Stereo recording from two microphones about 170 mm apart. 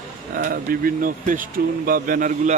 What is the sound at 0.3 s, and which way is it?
Speech, 55° right (ahead or behind).